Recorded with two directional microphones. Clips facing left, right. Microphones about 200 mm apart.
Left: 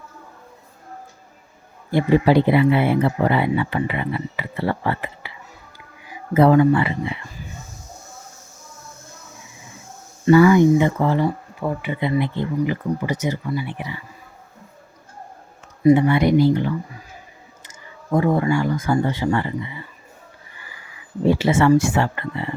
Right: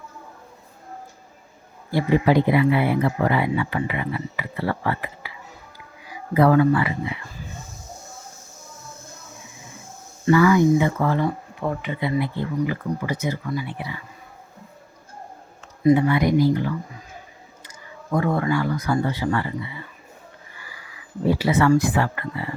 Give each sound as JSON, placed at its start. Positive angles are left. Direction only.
{"t": 1.9, "sound": "speech", "side_deg": 25}
{"t": 6.3, "sound": "speech", "side_deg": 20}
{"t": 10.2, "sound": "speech", "side_deg": 25}
{"t": 11.9, "sound": "speech", "side_deg": 20}
{"t": 16.0, "sound": "speech", "side_deg": 30}
{"t": 21.2, "sound": "speech", "side_deg": 25}